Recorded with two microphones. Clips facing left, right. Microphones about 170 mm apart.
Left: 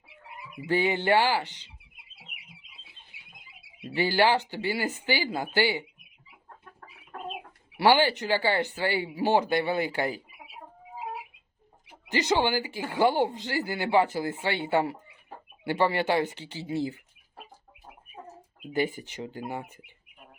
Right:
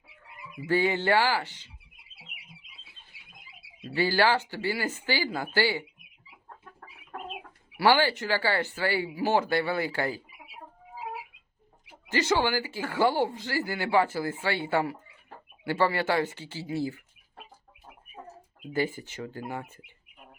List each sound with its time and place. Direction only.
0.7 s speech: 20° left (ahead or behind)
3.8 s speech: 20° left (ahead or behind)
7.8 s speech: 20° left (ahead or behind)
12.0 s speech: 15° left (ahead or behind)
18.7 s speech: 15° left (ahead or behind)